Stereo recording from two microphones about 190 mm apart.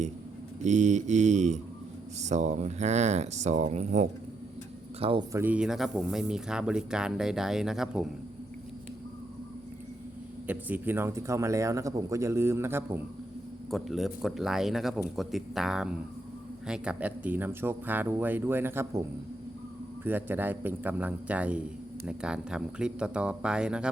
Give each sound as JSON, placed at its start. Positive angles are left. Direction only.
{"t": 0.6, "sound": "speech", "side_deg": -40}
{"t": 5.3, "sound": "a man's voice", "side_deg": -10}
{"t": 10.4, "sound": "speech", "side_deg": -10}
{"t": 13.7, "sound": "a man's voice", "side_deg": 0}
{"t": 20.1, "sound": "a man's voice", "side_deg": -10}